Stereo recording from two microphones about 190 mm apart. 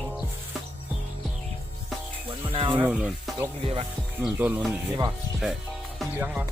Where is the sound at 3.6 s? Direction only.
30° right (ahead or behind).